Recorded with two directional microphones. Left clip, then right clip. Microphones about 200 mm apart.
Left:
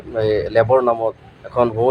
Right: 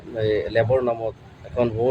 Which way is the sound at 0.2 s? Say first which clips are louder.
Left 5 dB; 10° right (ahead or behind).